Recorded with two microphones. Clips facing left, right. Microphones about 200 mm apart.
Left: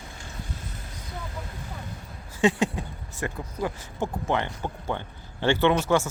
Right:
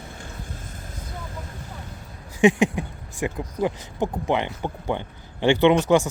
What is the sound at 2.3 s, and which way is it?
Speech, 15° right (ahead or behind).